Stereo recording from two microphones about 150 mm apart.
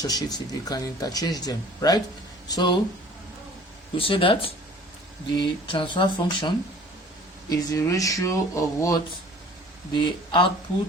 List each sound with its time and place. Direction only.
0.0 s speech: 25° left (ahead or behind)
3.9 s speech: 35° left (ahead or behind)
7.5 s speech: 25° left (ahead or behind)
9.9 s speech: 35° left (ahead or behind)